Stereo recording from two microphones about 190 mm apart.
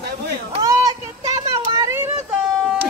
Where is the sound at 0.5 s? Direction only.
20° right (ahead or behind).